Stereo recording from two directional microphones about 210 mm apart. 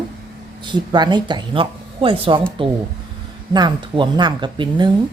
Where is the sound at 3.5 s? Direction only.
20° right (ahead or behind).